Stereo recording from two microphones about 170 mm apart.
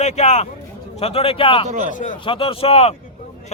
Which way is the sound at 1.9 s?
50° left (ahead or behind).